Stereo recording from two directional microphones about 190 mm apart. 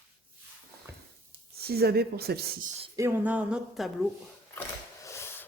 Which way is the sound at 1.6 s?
55° right (ahead or behind).